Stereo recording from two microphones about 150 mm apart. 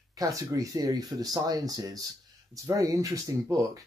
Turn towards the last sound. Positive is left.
turn(degrees=-20)  # may be behind; listen again after turning